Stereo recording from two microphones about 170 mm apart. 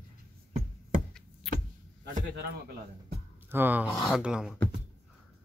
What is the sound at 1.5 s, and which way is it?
Vehicle, centre (ahead or behind).